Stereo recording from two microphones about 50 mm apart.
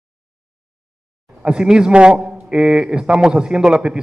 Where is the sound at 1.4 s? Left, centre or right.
Centre.